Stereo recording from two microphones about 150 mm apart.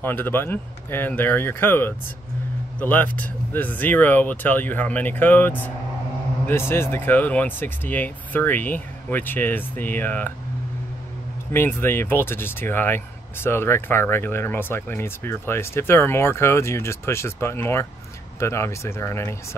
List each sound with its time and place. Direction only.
0.0 s speech: 15° left (ahead or behind)
11.5 s speech: 15° left (ahead or behind)